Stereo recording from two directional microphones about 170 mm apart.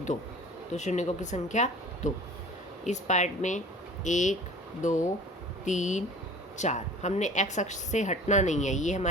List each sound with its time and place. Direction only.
0.7 s a woman's voice: 45° left (ahead or behind)